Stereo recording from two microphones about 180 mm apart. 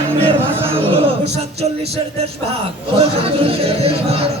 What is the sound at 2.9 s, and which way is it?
Speech, 35° right (ahead or behind).